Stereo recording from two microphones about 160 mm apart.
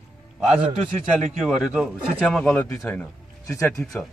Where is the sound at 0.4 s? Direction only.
5° right (ahead or behind).